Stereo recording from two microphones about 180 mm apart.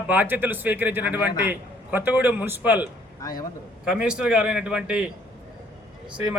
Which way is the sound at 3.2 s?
20° left (ahead or behind).